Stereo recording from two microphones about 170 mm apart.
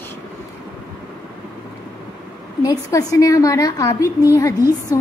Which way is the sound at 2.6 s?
20° left (ahead or behind).